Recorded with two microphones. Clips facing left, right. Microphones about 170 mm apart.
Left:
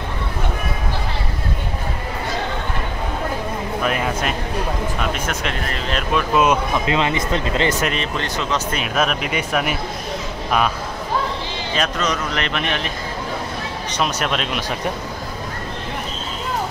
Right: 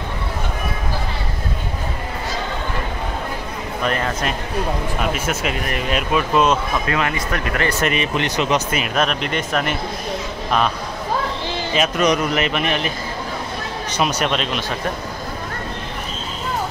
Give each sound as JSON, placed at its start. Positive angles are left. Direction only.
{"t": 3.8, "sound": "speech", "side_deg": 5}
{"t": 5.0, "sound": "speech", "side_deg": -5}
{"t": 6.3, "sound": "speech", "side_deg": 10}
{"t": 6.9, "sound": "speech", "side_deg": 20}
{"t": 7.8, "sound": "speech", "side_deg": -10}
{"t": 8.7, "sound": "speech", "side_deg": 0}
{"t": 11.7, "sound": "speech", "side_deg": -10}
{"t": 13.9, "sound": "speech", "side_deg": -5}